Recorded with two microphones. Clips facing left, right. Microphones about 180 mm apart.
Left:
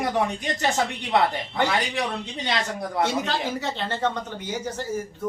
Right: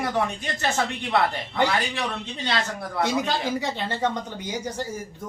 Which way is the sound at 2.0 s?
15° left (ahead or behind).